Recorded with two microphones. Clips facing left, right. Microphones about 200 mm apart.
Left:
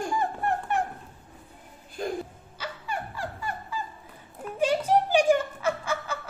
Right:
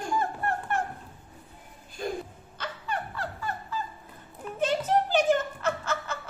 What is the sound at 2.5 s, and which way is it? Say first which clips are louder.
Dog: even; 10° left (ahead or behind).